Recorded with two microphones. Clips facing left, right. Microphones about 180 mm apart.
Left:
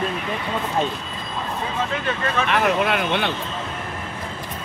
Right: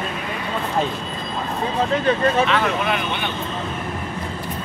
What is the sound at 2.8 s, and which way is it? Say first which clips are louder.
Speech: left 2 dB; 80° left.